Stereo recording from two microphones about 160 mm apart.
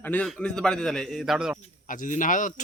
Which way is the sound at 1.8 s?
55° left (ahead or behind).